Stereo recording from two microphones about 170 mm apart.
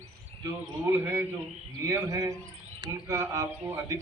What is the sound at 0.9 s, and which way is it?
A man's voice, 15° right (ahead or behind).